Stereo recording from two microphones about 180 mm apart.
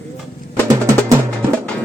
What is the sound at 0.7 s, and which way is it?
Drum, 15° right (ahead or behind).